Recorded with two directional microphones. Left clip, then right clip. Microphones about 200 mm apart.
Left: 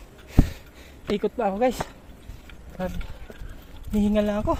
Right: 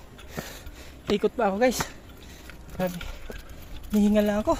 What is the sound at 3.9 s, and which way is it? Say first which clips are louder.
Speech: even; centre (ahead or behind).